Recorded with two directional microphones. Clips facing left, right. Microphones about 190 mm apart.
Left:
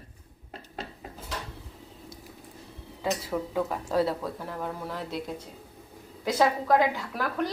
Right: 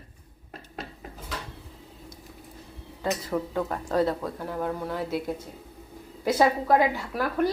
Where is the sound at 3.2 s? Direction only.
5° left (ahead or behind).